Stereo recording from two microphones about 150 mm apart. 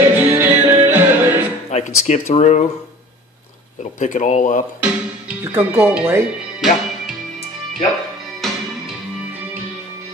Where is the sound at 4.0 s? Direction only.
55° left (ahead or behind).